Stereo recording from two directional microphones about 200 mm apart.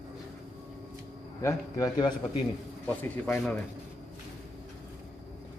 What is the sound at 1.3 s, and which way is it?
A man's voice, 15° left (ahead or behind).